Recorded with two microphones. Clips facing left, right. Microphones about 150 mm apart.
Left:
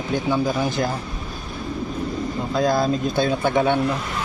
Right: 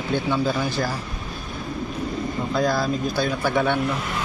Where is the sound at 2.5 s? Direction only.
20° left (ahead or behind).